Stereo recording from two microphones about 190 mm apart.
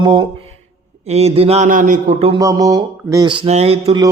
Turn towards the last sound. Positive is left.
turn(degrees=-30)  # may be behind; listen again after turning